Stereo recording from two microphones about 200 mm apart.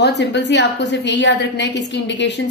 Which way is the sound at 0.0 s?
60° left (ahead or behind).